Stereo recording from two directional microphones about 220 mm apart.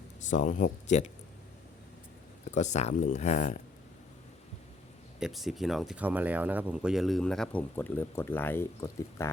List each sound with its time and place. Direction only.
0.3 s speech: 35° left (ahead or behind)
2.6 s speech: 30° left (ahead or behind)
5.2 s speech: centre (ahead or behind)